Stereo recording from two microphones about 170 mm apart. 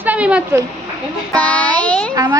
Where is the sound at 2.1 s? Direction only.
20° right (ahead or behind).